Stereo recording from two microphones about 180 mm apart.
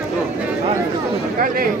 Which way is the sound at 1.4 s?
50° right (ahead or behind).